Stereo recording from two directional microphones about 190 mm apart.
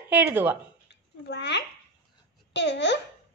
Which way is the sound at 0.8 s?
65° left (ahead or behind).